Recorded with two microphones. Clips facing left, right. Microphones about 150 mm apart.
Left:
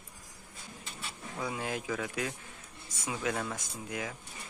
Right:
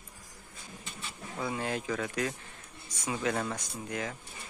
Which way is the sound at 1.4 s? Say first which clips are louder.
Right 2 dB; 10° left (ahead or behind).